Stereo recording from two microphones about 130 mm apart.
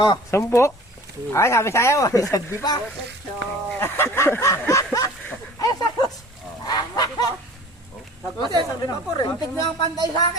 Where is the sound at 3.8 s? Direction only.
20° left (ahead or behind).